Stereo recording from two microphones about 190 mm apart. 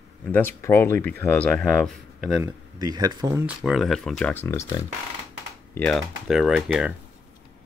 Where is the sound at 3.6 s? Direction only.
Centre (ahead or behind).